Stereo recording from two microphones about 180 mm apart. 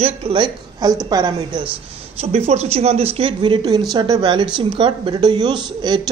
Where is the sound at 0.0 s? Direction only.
30° right (ahead or behind).